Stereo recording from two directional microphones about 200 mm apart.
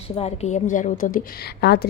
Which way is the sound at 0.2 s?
35° left (ahead or behind).